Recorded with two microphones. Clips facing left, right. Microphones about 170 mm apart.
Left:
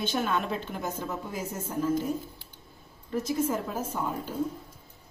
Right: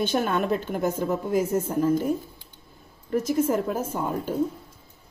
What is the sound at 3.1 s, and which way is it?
A woman's voice, 55° right (ahead or behind).